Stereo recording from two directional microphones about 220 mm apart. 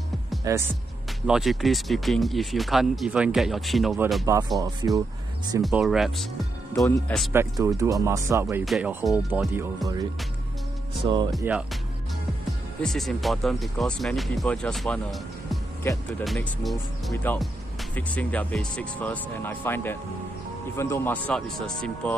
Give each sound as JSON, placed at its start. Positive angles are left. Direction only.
{"t": 0.4, "sound": "speech", "side_deg": -15}
{"t": 1.2, "sound": "speech", "side_deg": 0}
{"t": 4.6, "sound": "speech", "side_deg": -15}
{"t": 5.6, "sound": "speech", "side_deg": 0}
{"t": 7.3, "sound": "speech", "side_deg": -15}
{"t": 8.6, "sound": "speech", "side_deg": 0}
{"t": 11.3, "sound": "speech", "side_deg": 0}
{"t": 12.8, "sound": "speech", "side_deg": 0}